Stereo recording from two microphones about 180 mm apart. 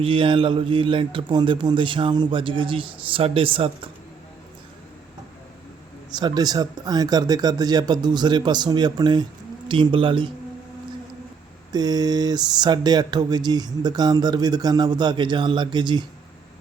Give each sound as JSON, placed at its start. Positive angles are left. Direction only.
{"t": 0.0, "sound": "speech", "side_deg": -30}
{"t": 6.1, "sound": "speech", "side_deg": -25}
{"t": 11.7, "sound": "speech", "side_deg": -20}